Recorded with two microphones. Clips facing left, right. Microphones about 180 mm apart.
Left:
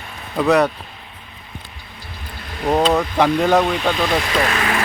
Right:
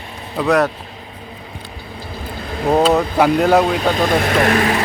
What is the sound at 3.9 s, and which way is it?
Speech, 50° right (ahead or behind).